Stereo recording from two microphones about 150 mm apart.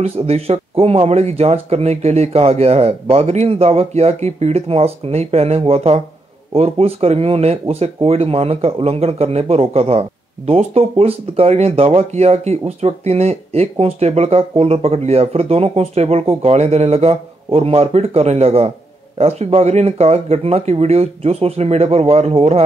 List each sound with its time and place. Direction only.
0.0 s speech: 45° right (ahead or behind)